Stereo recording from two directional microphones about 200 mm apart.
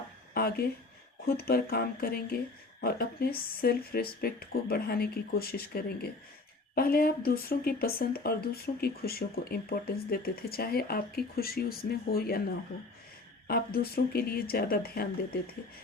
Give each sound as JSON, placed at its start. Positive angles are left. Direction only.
{"t": 0.3, "sound": "a sound", "side_deg": 50}
{"t": 1.4, "sound": "speech", "side_deg": 50}
{"t": 13.5, "sound": "speech", "side_deg": 50}